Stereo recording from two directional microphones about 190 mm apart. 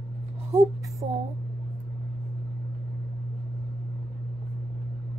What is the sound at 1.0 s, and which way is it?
Speech, 30° right (ahead or behind).